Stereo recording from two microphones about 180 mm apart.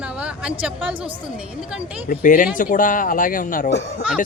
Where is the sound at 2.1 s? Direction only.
50° left (ahead or behind).